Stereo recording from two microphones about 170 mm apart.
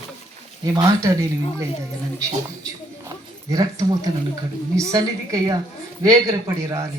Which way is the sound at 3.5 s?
20° right (ahead or behind).